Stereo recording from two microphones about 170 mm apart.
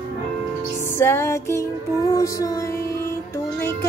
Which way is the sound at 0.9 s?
15° left (ahead or behind).